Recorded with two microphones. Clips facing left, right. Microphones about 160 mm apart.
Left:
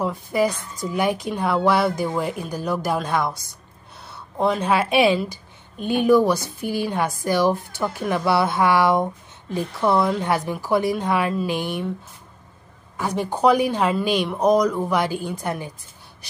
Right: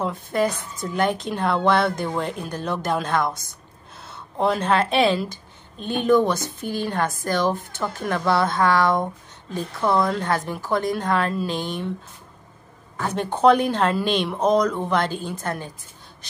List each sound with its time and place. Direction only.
0.0 s a woman's voice: 5° left (ahead or behind)
4.4 s speech: centre (ahead or behind)
10.2 s speech: 15° left (ahead or behind)
12.9 s speech: 10° left (ahead or behind)